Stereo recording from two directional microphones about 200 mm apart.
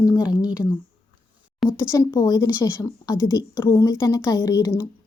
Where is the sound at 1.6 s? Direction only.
15° left (ahead or behind).